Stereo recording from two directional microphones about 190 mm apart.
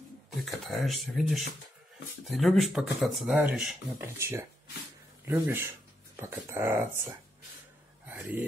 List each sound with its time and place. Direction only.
0.7 s speech: centre (ahead or behind)